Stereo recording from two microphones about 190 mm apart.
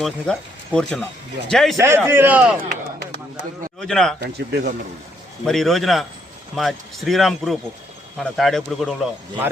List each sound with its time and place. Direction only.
0.0 s a man's voice: 5° left (ahead or behind)
1.7 s speech: 15° right (ahead or behind)
3.8 s a man's voice: 5° left (ahead or behind)
4.2 s speech: 60° right (ahead or behind)
5.5 s a man's voice: centre (ahead or behind)